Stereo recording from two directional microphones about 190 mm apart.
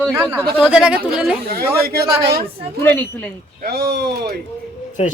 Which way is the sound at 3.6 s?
55° right (ahead or behind).